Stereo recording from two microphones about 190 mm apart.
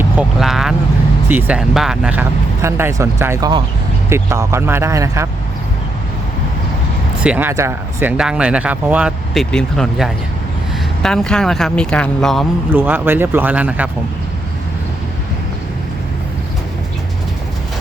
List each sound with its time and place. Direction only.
0.0 s vehicle: 5° right (ahead or behind)
1.3 s speech: 10° right (ahead or behind)
7.3 s speech: 10° right (ahead or behind)
12.7 s speech: 10° right (ahead or behind)